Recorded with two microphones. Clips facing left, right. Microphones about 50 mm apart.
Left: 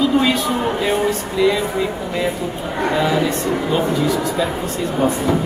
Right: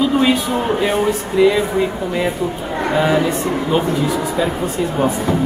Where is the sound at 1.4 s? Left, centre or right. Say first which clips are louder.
Right 3 dB; right.